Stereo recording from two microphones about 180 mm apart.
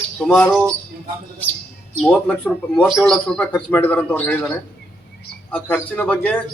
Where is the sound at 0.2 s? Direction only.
5° left (ahead or behind).